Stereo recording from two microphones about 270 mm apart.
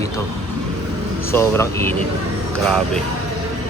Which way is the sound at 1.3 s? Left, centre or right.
Centre.